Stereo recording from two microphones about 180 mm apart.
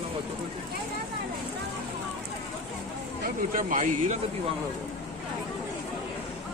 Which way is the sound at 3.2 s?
50° right (ahead or behind).